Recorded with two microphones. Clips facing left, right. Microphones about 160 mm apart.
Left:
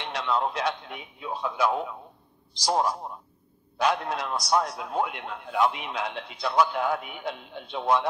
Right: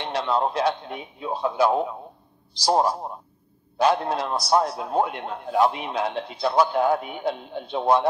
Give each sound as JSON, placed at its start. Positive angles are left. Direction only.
{"t": 0.0, "sound": "a man's voice", "side_deg": -35}